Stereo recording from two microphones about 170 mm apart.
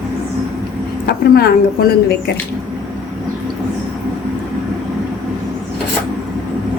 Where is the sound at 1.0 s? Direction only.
70° left (ahead or behind).